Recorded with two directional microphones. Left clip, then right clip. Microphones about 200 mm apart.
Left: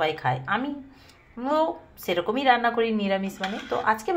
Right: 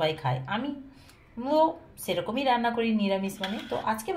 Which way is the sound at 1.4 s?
5° left (ahead or behind).